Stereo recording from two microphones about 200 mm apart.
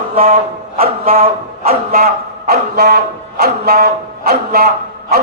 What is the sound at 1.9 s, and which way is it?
A man's voice, 50° right (ahead or behind).